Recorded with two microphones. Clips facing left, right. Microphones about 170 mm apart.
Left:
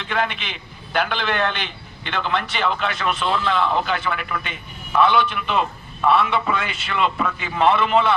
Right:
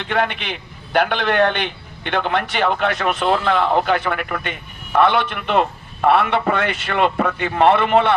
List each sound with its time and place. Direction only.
0.1 s a man's voice: 60° right (ahead or behind)